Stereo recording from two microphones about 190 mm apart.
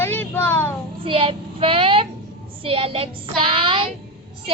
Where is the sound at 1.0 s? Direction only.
30° right (ahead or behind).